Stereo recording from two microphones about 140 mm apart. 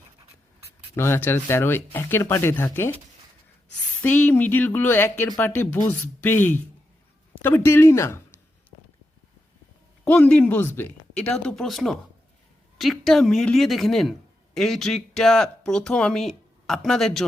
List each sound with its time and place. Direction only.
0.9 s speech: 15° left (ahead or behind)
4.0 s speech: 15° left (ahead or behind)
10.0 s speech: 10° left (ahead or behind)